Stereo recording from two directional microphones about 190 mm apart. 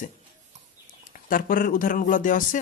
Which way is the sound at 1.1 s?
45° left (ahead or behind).